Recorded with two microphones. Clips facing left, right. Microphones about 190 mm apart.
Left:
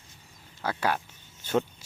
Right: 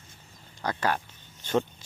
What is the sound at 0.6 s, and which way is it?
Speech, 10° left (ahead or behind).